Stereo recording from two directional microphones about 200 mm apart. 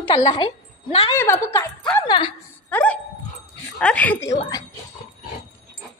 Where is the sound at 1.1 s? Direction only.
10° left (ahead or behind).